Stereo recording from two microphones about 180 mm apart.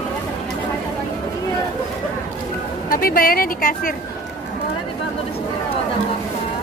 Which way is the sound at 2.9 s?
55° left (ahead or behind).